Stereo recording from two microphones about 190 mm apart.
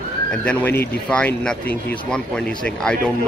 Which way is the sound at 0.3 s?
5° left (ahead or behind).